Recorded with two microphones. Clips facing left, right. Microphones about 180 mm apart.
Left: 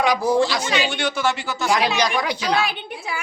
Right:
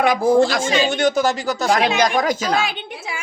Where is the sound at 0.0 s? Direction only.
50° right (ahead or behind).